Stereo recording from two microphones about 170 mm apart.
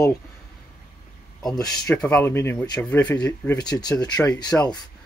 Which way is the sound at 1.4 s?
5° left (ahead or behind).